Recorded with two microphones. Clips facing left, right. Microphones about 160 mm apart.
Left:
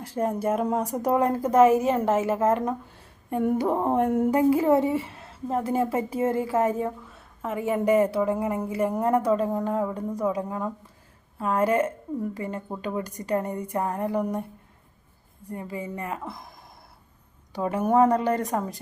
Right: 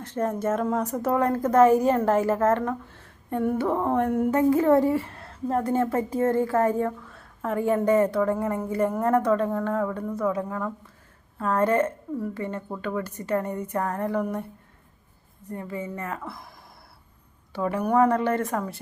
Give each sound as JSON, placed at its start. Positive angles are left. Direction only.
{"t": 0.0, "sound": "speech", "side_deg": 10}
{"t": 15.4, "sound": "speech", "side_deg": 15}
{"t": 17.6, "sound": "a woman's voice", "side_deg": 20}